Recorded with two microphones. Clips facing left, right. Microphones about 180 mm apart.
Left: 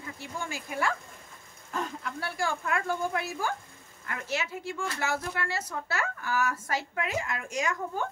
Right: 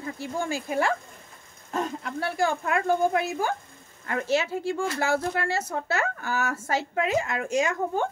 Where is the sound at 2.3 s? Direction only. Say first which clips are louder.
Right 5 dB; 20° right (ahead or behind).